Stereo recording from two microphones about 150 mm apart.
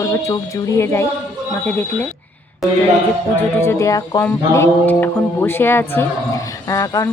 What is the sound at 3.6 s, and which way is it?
Speech, 20° left (ahead or behind).